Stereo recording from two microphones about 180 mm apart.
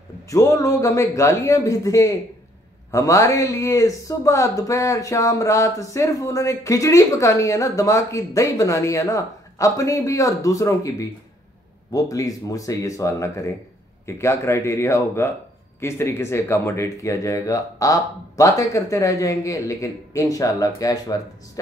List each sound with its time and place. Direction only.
0.3 s speech: 20° left (ahead or behind)